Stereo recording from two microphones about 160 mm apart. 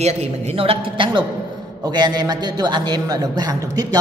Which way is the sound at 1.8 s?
25° right (ahead or behind).